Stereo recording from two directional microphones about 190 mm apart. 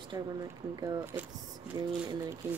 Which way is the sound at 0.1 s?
20° right (ahead or behind).